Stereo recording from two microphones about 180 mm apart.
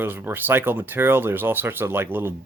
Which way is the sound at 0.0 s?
10° right (ahead or behind).